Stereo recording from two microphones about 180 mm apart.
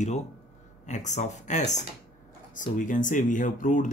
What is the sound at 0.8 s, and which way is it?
Speech, 40° left (ahead or behind).